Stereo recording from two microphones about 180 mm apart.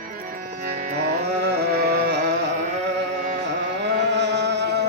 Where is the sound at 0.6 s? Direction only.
50° right (ahead or behind).